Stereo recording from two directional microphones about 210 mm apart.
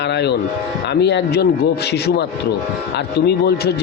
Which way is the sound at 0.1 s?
55° left (ahead or behind).